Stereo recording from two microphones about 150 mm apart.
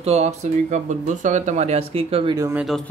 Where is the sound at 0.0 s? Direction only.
45° right (ahead or behind).